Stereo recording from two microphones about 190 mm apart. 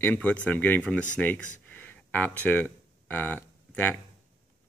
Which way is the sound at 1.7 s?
10° left (ahead or behind).